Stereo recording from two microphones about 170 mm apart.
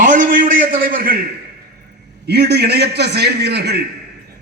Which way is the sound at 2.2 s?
75° right (ahead or behind).